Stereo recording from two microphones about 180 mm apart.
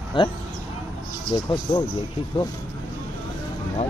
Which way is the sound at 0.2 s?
30° left (ahead or behind).